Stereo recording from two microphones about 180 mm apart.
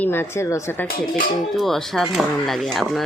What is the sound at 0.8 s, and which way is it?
Speech, 55° left (ahead or behind).